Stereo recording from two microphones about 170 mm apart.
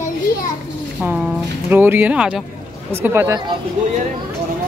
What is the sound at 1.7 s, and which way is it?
Speech, 10° right (ahead or behind).